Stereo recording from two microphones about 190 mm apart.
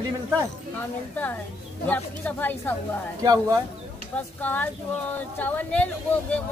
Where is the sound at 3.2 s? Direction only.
20° right (ahead or behind).